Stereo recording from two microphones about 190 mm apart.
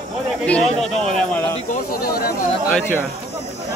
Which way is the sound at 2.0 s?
55° left (ahead or behind).